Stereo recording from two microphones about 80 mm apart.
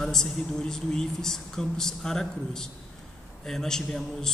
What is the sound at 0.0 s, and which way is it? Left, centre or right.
A man's voice, centre.